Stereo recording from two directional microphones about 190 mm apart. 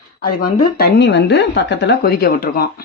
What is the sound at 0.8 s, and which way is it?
A woman's voice, 65° left (ahead or behind).